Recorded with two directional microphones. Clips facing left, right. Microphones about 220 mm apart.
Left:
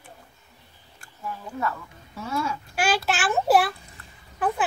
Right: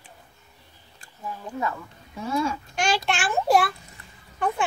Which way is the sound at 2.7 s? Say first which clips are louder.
Left 4 dB; 5° left (ahead or behind).